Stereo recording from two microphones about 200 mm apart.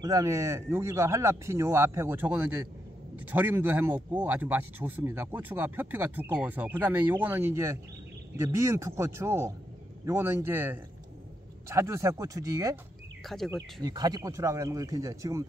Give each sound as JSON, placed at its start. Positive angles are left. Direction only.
{"t": 0.0, "sound": "speech", "side_deg": -15}
{"t": 13.2, "sound": "speech", "side_deg": 0}
{"t": 13.5, "sound": "speech", "side_deg": -20}